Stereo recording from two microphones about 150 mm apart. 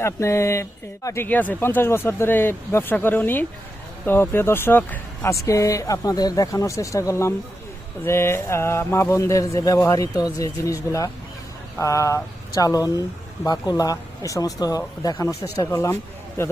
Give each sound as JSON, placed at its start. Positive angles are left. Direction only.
{"t": 0.0, "sound": "speech", "side_deg": 20}